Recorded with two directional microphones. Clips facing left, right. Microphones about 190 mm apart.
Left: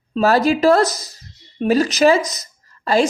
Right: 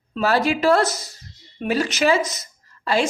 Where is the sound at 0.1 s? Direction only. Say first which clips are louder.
Left 5 dB; 40° left (ahead or behind).